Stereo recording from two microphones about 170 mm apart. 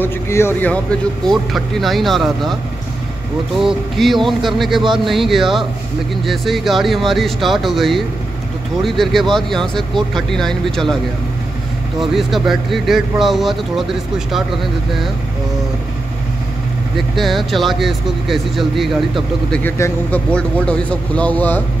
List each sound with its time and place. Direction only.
0.0 s speech: 15° left (ahead or behind)
1.2 s speech: centre (ahead or behind)
3.5 s speech: centre (ahead or behind)
12.0 s speech: centre (ahead or behind)
16.9 s speech: centre (ahead or behind)
19.5 s speech: 10° left (ahead or behind)